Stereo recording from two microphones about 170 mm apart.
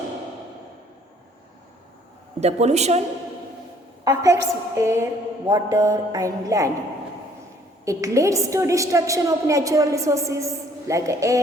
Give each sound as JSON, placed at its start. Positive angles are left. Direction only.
{"t": 2.4, "sound": "a woman's voice", "side_deg": -40}
{"t": 4.0, "sound": "a woman's voice", "side_deg": -20}
{"t": 7.9, "sound": "a woman's voice", "side_deg": -20}